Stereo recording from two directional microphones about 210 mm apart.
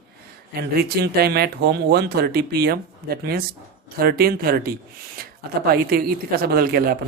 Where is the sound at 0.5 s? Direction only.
50° right (ahead or behind).